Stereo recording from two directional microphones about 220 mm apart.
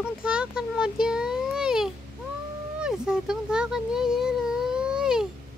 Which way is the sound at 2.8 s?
5° right (ahead or behind).